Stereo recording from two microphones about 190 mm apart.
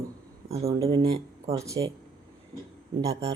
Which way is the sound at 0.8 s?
20° right (ahead or behind).